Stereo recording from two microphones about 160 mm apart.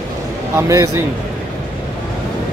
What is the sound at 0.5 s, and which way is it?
Speech, 20° right (ahead or behind).